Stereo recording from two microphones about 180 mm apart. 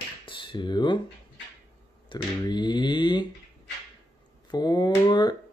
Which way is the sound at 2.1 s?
25° left (ahead or behind).